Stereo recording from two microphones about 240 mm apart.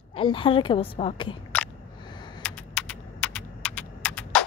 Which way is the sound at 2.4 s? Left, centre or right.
Centre.